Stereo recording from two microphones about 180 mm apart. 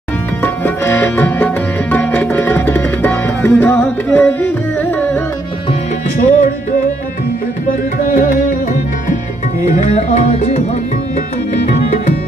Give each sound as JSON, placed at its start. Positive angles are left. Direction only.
{"t": 0.4, "sound": "music", "side_deg": 10}
{"t": 6.1, "sound": "music", "side_deg": 45}
{"t": 7.6, "sound": "tabla", "side_deg": 50}
{"t": 9.8, "sound": "music", "side_deg": 40}